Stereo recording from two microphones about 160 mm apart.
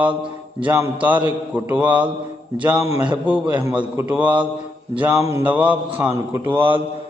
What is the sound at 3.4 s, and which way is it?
Mantra, 20° right (ahead or behind).